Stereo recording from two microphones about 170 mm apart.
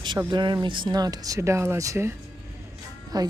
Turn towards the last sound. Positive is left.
turn(degrees=-20)  # may be behind; listen again after turning